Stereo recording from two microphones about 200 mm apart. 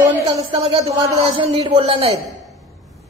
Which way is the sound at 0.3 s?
25° right (ahead or behind).